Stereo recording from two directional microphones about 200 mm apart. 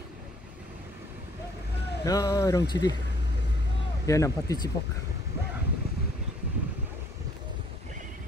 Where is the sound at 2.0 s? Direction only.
15° left (ahead or behind).